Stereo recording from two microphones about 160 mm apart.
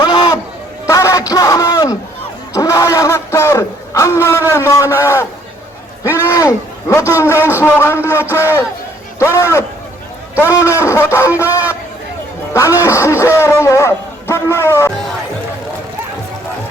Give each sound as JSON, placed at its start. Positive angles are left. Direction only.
{"t": 0.0, "sound": "a sound", "side_deg": 25}
{"t": 4.9, "sound": "a man's voice", "side_deg": 15}
{"t": 12.5, "sound": "a man's voice", "side_deg": 20}